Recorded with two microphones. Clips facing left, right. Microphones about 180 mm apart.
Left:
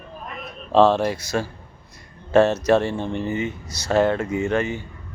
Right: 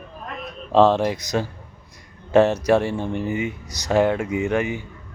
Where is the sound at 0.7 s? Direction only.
15° right (ahead or behind).